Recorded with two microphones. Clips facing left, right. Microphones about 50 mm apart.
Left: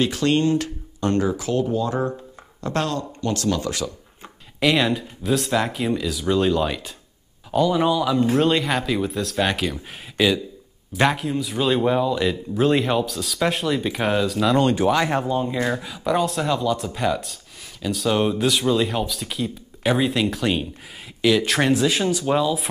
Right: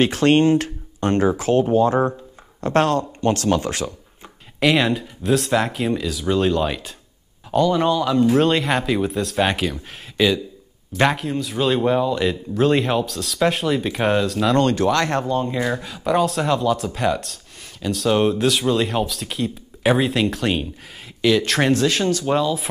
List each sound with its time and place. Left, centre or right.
0.0 s speech: right
4.6 s speech: centre